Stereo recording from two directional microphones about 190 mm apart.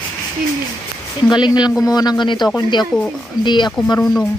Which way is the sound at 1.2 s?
20° left (ahead or behind).